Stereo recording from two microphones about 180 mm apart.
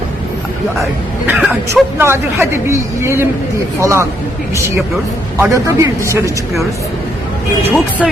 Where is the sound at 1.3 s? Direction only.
5° right (ahead or behind).